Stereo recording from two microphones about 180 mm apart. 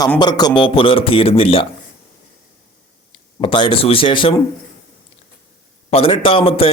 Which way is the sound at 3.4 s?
30° left (ahead or behind).